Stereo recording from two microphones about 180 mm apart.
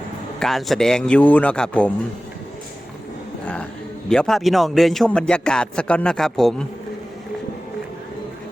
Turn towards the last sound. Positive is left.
turn(degrees=0)  # may be behind; listen again after turning